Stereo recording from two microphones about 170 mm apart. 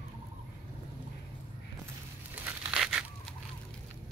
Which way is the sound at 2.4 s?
10° right (ahead or behind).